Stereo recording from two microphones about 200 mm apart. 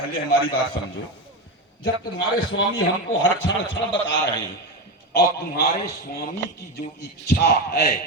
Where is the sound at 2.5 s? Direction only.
70° left (ahead or behind).